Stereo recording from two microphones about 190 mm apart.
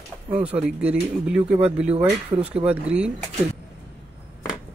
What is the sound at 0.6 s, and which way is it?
Speech, 10° right (ahead or behind).